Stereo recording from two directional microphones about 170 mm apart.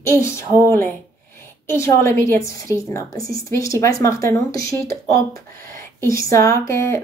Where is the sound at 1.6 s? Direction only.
15° left (ahead or behind).